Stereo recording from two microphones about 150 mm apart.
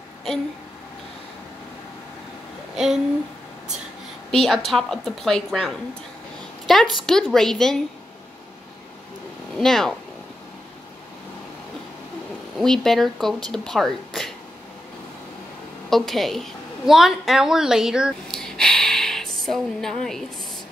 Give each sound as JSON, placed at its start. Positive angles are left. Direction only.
{"t": 2.7, "sound": "speech", "side_deg": -5}
{"t": 4.3, "sound": "speech", "side_deg": 0}
{"t": 9.6, "sound": "speech", "side_deg": 5}
{"t": 12.5, "sound": "speech", "side_deg": 5}
{"t": 15.9, "sound": "a woman's voice", "side_deg": 0}